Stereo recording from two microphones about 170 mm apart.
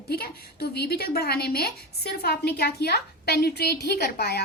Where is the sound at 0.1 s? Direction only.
65° left (ahead or behind).